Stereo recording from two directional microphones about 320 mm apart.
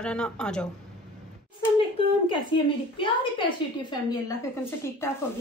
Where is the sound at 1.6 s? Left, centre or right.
Centre.